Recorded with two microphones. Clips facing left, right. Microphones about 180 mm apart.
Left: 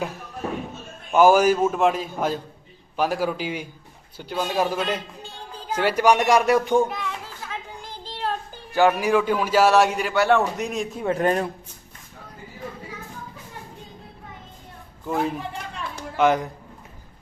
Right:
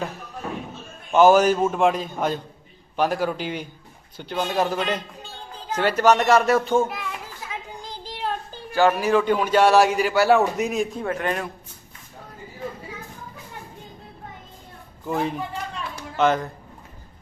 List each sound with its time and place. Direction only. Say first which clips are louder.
1.1 s a man's voice: right 1 dB; 10° left (ahead or behind)
6.8 s a sound: left 1 dB; 5° right (ahead or behind)
8.7 s a man's voice: even; 15° left (ahead or behind); by 11.0 s centre (ahead or behind)
11.1 s speech: left 4 dB; 35° left (ahead or behind)
15.0 s a man's voice: even; centre (ahead or behind)
16.1 s speech: left 1 dB; 15° left (ahead or behind)